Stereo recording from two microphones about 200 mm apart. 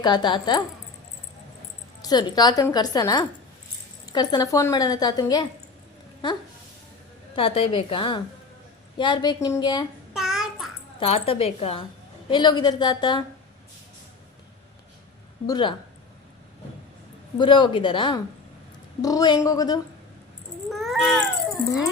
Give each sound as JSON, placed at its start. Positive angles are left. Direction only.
{"t": 0.0, "sound": "a woman's voice", "side_deg": 20}
{"t": 2.0, "sound": "a woman's voice", "side_deg": 20}
{"t": 7.3, "sound": "a woman's voice", "side_deg": 30}
{"t": 10.2, "sound": "babbling", "side_deg": 0}
{"t": 11.0, "sound": "a woman's voice", "side_deg": 30}
{"t": 15.4, "sound": "a woman's voice", "side_deg": 20}
{"t": 17.3, "sound": "a woman's voice", "side_deg": 25}
{"t": 20.7, "sound": "a sound", "side_deg": 0}